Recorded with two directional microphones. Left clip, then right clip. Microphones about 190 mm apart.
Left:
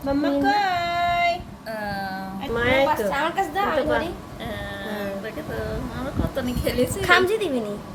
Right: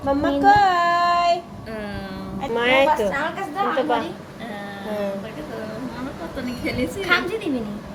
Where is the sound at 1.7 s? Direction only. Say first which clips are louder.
Left 3 dB; 50° left (ahead or behind).